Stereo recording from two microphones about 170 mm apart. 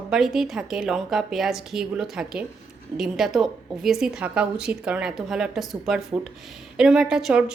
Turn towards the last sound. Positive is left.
turn(degrees=-5)  # may be behind; listen again after turning